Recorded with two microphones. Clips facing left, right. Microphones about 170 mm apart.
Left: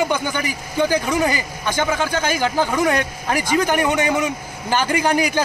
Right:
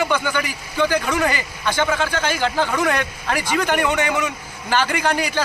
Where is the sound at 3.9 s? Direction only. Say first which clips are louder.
Left 2 dB; 15° left (ahead or behind).